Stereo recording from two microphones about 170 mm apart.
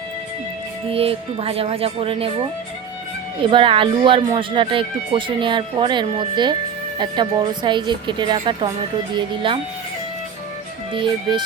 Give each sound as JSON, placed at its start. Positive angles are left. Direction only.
{"t": 0.9, "sound": "speech", "side_deg": -35}
{"t": 3.4, "sound": "speech", "side_deg": -30}
{"t": 10.9, "sound": "speech", "side_deg": -25}